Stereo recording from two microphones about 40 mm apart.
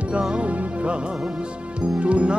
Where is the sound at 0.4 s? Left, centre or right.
Right.